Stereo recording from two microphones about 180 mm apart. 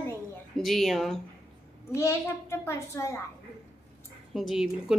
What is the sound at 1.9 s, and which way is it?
A child's voice, 15° left (ahead or behind).